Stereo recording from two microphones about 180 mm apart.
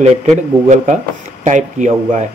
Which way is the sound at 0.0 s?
40° right (ahead or behind).